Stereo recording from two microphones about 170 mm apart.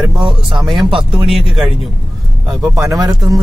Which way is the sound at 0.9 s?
30° right (ahead or behind).